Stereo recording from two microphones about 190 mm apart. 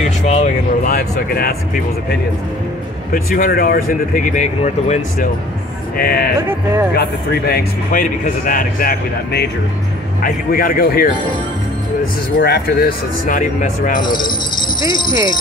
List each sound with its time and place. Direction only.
0.2 s a sound: 40° left (ahead or behind)
0.9 s speech: 55° left (ahead or behind)
3.1 s speech: 45° left (ahead or behind)
5.9 s speech: 55° left (ahead or behind)
12.4 s speech: 55° left (ahead or behind)
14.0 s speech: 25° left (ahead or behind)